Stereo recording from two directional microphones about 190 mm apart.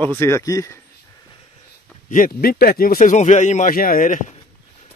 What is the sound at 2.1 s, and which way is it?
Speech, 50° left (ahead or behind).